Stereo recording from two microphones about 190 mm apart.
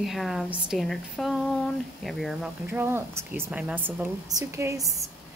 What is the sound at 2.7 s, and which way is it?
A woman's voice, 10° right (ahead or behind).